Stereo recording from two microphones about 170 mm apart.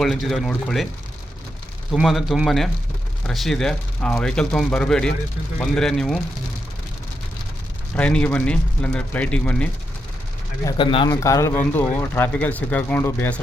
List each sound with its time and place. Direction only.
0.0 s speech: centre (ahead or behind)
1.9 s speech: centre (ahead or behind)
7.9 s speech: 5° left (ahead or behind)
10.7 s speech: 25° left (ahead or behind); by 13.4 s 10° left (ahead or behind)